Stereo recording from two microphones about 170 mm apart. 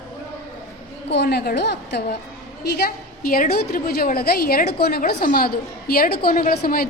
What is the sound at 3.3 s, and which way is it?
A woman's voice, 60° left (ahead or behind).